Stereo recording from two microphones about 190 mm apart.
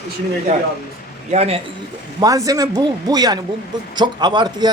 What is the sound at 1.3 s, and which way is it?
Speech, 35° right (ahead or behind).